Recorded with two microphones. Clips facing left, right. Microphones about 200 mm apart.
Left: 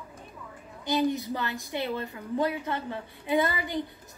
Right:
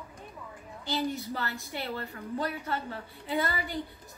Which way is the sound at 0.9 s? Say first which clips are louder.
Left 5 dB; 15° left (ahead or behind).